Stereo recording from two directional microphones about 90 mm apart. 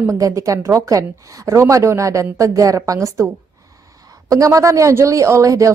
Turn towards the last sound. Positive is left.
turn(degrees=-35)  # may be behind; listen again after turning